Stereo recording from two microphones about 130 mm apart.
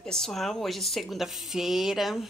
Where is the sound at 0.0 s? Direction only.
5° left (ahead or behind).